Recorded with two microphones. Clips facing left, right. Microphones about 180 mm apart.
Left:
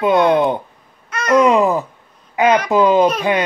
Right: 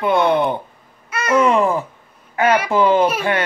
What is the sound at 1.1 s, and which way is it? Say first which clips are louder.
Babbling: left 3 dB; 10° right (ahead or behind).